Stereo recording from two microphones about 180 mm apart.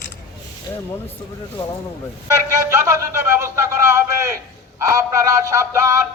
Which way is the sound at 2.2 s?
15° right (ahead or behind).